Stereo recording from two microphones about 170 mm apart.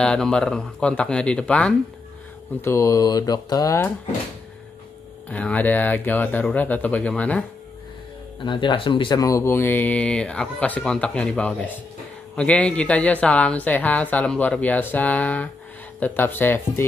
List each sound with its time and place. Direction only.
0.0 s speech: 5° left (ahead or behind)
2.6 s speech: 15° left (ahead or behind)
5.3 s speech: 10° left (ahead or behind)
8.5 s speech: 30° left (ahead or behind); by 16.8 s 10° left (ahead or behind)